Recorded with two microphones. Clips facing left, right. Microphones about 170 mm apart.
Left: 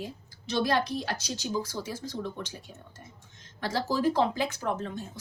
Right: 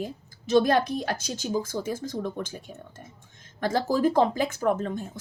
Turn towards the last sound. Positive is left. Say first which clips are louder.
# right 6 dB
turn(degrees=-50)  # may be behind; listen again after turning